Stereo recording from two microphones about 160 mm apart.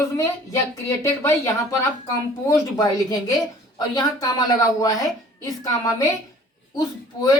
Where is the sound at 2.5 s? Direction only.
25° left (ahead or behind).